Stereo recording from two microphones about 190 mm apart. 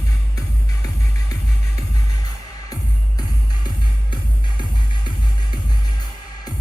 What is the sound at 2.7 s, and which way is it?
Music, 20° left (ahead or behind).